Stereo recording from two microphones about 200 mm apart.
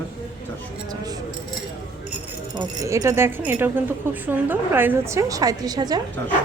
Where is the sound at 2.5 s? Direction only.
15° right (ahead or behind).